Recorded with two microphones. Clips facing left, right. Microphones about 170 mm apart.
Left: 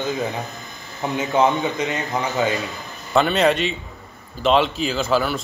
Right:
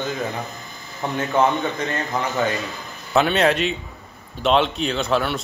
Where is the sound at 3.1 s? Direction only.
Centre (ahead or behind).